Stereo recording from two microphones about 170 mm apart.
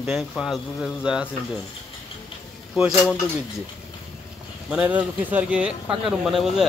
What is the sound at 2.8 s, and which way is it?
Speech, 5° right (ahead or behind).